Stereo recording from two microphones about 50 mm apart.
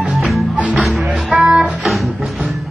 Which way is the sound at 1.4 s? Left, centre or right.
Centre.